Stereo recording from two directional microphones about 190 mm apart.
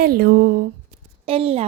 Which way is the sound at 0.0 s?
50° right (ahead or behind).